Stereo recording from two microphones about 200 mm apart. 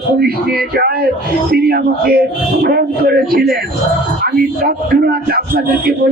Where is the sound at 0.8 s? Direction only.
50° right (ahead or behind).